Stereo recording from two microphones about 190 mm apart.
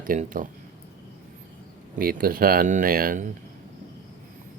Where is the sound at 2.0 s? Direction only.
50° right (ahead or behind).